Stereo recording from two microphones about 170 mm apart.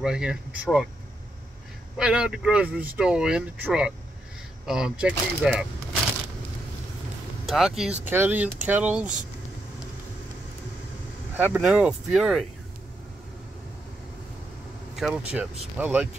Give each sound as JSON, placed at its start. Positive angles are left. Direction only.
{"t": 0.0, "sound": "speech", "side_deg": -5}
{"t": 2.0, "sound": "speech", "side_deg": -5}
{"t": 7.4, "sound": "speech", "side_deg": 0}
{"t": 11.3, "sound": "speech", "side_deg": -10}
{"t": 15.0, "sound": "speech", "side_deg": -5}